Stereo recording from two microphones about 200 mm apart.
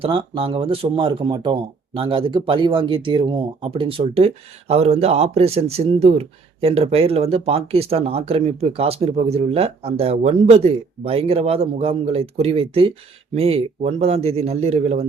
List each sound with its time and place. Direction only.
0.0 s speech: 25° right (ahead or behind)